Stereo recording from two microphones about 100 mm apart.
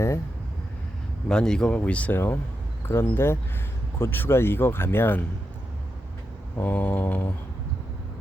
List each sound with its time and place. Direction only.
1.3 s speech: 10° left (ahead or behind)
6.6 s speech: 15° left (ahead or behind)